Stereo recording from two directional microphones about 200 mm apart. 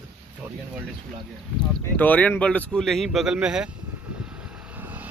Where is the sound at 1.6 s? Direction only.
10° left (ahead or behind); by 4.3 s 5° right (ahead or behind).